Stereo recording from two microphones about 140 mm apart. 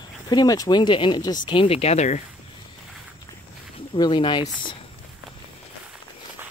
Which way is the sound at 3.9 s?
35° left (ahead or behind).